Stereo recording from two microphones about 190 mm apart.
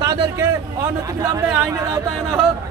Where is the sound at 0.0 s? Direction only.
20° right (ahead or behind).